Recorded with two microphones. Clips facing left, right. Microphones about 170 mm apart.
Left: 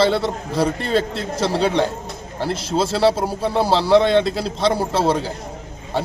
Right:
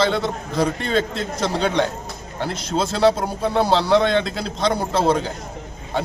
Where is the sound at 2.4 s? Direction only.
5° left (ahead or behind).